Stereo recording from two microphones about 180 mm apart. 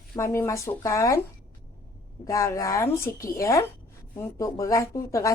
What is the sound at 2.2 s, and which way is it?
A woman's voice, 15° left (ahead or behind).